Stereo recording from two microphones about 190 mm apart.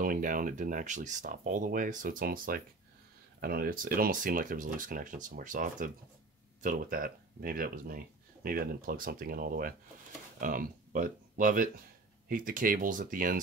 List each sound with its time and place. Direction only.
0.0 s speech: 45° right (ahead or behind)